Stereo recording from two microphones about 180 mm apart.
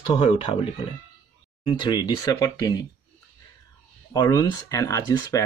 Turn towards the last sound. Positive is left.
turn(degrees=20)  # may be behind; listen again after turning